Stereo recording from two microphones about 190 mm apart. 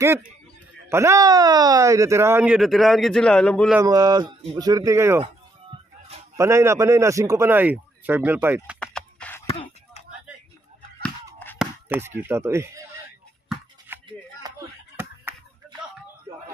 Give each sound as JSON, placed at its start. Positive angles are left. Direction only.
{"t": 0.8, "sound": "speech", "side_deg": -15}
{"t": 3.8, "sound": "speech", "side_deg": -20}
{"t": 6.3, "sound": "speech", "side_deg": -15}
{"t": 8.7, "sound": "a sound", "side_deg": 5}
{"t": 9.5, "sound": "a sound", "side_deg": 30}
{"t": 11.5, "sound": "chop", "side_deg": -5}
{"t": 13.9, "sound": "music", "side_deg": -10}